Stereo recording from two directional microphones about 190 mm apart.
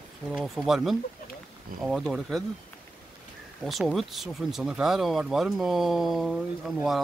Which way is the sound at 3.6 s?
Centre (ahead or behind).